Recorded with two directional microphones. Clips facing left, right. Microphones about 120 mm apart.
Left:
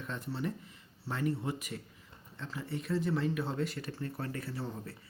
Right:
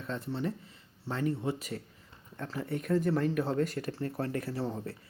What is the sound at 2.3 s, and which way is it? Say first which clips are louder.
Speech: right 4 dB; 55° right (ahead or behind).